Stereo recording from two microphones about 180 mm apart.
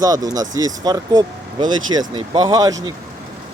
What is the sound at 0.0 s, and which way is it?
Speech, 20° right (ahead or behind).